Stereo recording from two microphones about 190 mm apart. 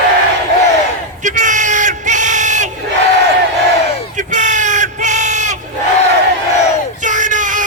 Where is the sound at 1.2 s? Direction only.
40° right (ahead or behind).